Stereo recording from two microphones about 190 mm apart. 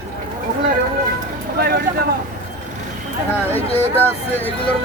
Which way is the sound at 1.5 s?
55° right (ahead or behind).